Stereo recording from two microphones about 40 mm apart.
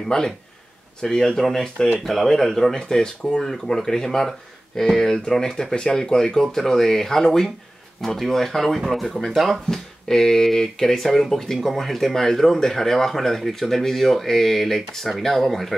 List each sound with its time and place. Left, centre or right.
0.1 s speech: centre